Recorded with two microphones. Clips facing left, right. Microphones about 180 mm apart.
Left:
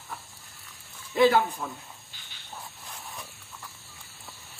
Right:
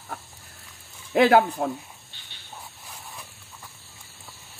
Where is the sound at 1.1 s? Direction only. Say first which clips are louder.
Right 3 dB; 65° right (ahead or behind).